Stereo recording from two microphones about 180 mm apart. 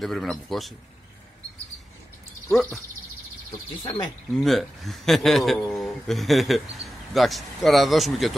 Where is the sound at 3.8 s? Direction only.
20° left (ahead or behind).